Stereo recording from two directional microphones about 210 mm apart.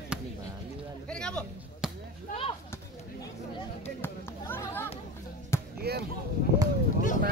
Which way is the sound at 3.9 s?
10° left (ahead or behind).